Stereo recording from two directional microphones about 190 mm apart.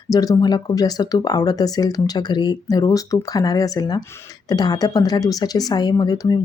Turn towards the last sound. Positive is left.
turn(degrees=20)  # may be behind; listen again after turning